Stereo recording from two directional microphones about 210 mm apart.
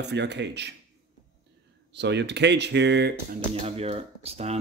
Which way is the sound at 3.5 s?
30° right (ahead or behind).